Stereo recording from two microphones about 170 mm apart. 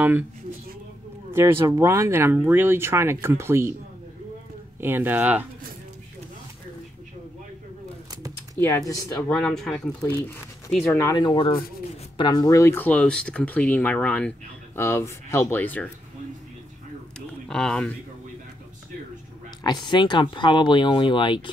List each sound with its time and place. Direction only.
1.3 s speech: 15° right (ahead or behind)
4.7 s speech: 10° right (ahead or behind)
8.5 s speech: 15° left (ahead or behind)
9.3 s speech: 5° left (ahead or behind)
11.1 s speech: 30° left (ahead or behind); by 15.9 s 10° left (ahead or behind)
17.5 s speech: 5° left (ahead or behind)
19.6 s speech: 25° left (ahead or behind)